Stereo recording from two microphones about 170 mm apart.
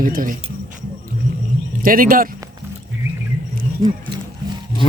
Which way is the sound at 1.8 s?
55° right (ahead or behind).